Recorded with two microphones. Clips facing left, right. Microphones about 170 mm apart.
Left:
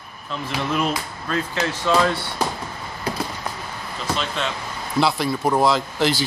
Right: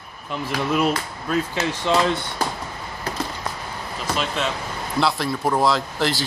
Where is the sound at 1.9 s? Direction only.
20° right (ahead or behind).